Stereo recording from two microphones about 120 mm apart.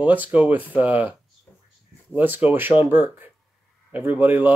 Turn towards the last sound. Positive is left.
turn(degrees=-15)  # may be behind; listen again after turning